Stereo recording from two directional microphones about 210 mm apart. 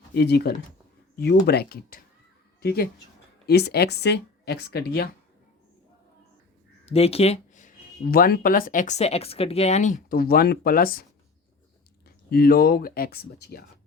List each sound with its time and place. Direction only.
0.1 s speech: 50° left (ahead or behind)
6.9 s speech: 30° left (ahead or behind)
12.0 s speech: 45° left (ahead or behind)